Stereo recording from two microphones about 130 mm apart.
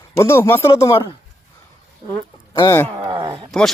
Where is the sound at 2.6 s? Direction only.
20° left (ahead or behind).